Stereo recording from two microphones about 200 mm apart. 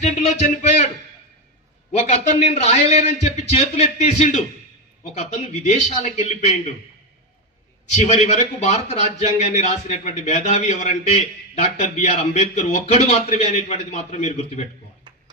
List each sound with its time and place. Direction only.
0.0 s a sound: 35° left (ahead or behind)
2.0 s a man's voice: 35° left (ahead or behind)
7.9 s a man's voice: 35° left (ahead or behind)